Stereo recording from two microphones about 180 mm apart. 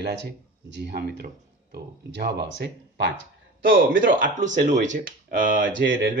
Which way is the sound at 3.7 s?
50° right (ahead or behind).